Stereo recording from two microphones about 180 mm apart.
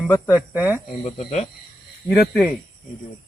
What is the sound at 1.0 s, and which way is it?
Speech, 35° left (ahead or behind).